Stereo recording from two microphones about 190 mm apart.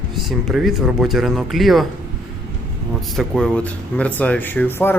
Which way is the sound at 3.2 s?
Centre (ahead or behind).